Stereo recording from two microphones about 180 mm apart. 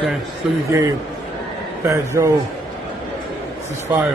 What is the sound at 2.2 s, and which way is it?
Speech, 20° right (ahead or behind).